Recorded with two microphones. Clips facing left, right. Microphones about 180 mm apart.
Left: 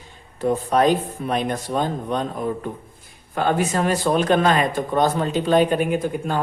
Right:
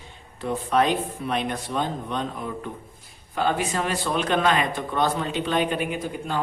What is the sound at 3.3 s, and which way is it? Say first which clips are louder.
Speech: left 4 dB; 45° left (ahead or behind).